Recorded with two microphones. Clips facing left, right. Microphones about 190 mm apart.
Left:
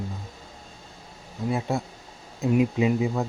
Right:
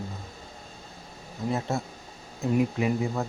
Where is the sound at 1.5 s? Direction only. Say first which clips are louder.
Left 2 dB; 15° left (ahead or behind).